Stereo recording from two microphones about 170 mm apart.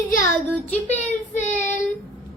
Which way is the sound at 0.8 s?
40° left (ahead or behind).